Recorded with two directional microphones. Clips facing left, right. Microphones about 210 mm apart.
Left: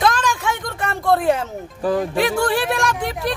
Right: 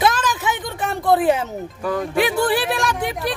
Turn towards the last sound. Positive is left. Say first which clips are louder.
# even
turn(degrees=0)  # may be behind; listen again after turning